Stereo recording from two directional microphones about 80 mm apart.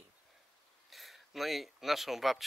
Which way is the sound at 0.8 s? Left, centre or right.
Centre.